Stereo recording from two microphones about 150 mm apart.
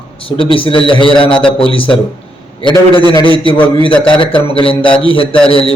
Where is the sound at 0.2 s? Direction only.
40° left (ahead or behind).